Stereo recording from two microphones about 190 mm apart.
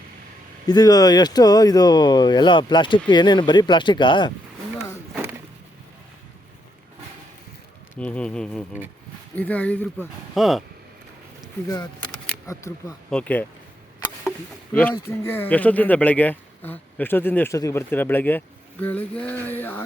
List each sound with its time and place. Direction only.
0.7 s speech: 20° left (ahead or behind)
7.9 s speech: 5° left (ahead or behind)
11.7 s a sound: 20° left (ahead or behind)
12.3 s camera: 15° left (ahead or behind)
13.1 s speech: 5° left (ahead or behind)